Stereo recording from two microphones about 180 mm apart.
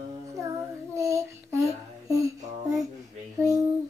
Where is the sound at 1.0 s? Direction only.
15° right (ahead or behind).